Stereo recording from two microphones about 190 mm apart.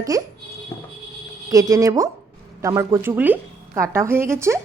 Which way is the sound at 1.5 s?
20° right (ahead or behind).